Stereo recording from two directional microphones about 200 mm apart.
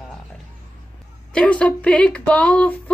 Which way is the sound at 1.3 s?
5° left (ahead or behind).